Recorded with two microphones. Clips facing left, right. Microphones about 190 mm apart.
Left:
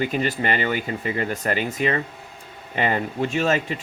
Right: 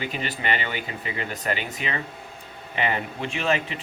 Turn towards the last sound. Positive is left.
turn(degrees=45)  # may be behind; listen again after turning